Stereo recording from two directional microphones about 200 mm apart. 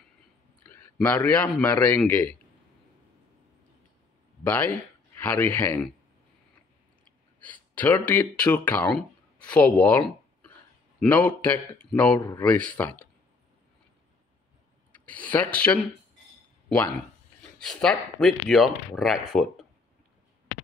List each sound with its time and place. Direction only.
0.7 s a man's voice: 10° left (ahead or behind)
4.4 s speech: 10° left (ahead or behind)
7.3 s a man's voice: 10° left (ahead or behind)
12.2 s speech: 20° left (ahead or behind)
12.4 s a man's voice: 10° left (ahead or behind)
14.9 s speech: 5° left (ahead or behind)